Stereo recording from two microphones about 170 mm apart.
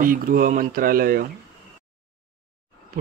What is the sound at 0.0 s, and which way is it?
Speech, 55° right (ahead or behind).